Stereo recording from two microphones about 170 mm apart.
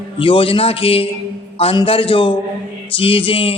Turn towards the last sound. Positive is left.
turn(degrees=35)  # may be behind; listen again after turning